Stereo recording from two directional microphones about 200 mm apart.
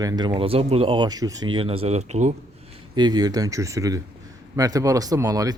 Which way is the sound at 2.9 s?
20° right (ahead or behind).